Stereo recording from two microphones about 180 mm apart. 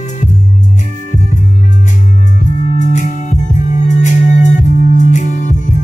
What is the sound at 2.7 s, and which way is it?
Music, 40° left (ahead or behind).